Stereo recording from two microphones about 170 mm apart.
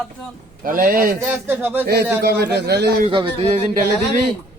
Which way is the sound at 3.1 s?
30° right (ahead or behind).